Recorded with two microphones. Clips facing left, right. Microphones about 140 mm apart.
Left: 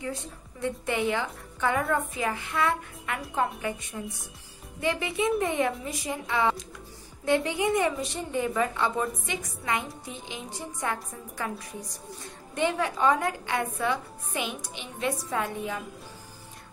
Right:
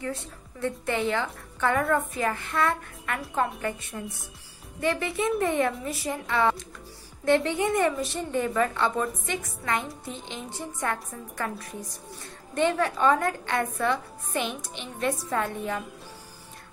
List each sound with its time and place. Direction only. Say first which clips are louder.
0.0 s a woman's voice: right 1 dB; 15° left (ahead or behind)
12.5 s a woman's voice: right 3 dB; 15° left (ahead or behind)